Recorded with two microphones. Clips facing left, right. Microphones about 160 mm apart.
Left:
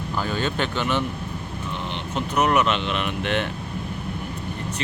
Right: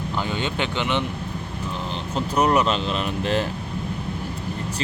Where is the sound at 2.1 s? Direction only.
35° right (ahead or behind).